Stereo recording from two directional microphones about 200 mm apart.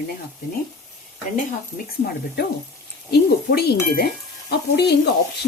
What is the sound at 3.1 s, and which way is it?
Speech, 50° left (ahead or behind).